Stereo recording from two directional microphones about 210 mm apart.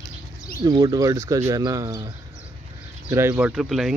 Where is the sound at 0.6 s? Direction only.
20° right (ahead or behind).